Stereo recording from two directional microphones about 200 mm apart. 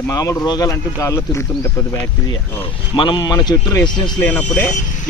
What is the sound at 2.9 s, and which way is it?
Speech, 20° left (ahead or behind).